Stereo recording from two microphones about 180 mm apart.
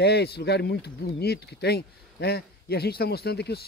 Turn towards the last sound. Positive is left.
turn(degrees=65)  # may be behind; listen again after turning